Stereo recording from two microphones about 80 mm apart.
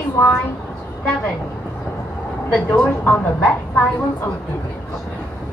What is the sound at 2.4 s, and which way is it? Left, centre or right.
A woman's voice, centre.